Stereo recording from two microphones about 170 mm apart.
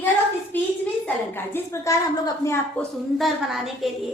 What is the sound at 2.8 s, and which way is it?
A woman's voice, centre (ahead or behind).